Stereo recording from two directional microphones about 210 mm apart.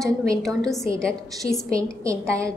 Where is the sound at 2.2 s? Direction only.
15° right (ahead or behind).